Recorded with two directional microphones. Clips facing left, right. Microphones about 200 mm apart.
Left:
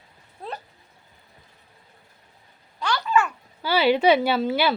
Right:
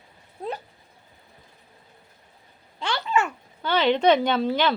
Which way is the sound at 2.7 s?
25° right (ahead or behind).